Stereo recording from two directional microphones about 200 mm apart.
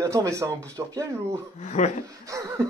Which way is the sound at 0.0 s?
15° right (ahead or behind).